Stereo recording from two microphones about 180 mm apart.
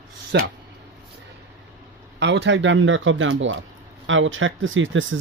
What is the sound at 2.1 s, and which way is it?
Speech, 75° right (ahead or behind).